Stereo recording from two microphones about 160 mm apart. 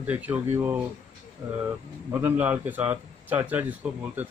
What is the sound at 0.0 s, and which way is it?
Speech, 10° right (ahead or behind).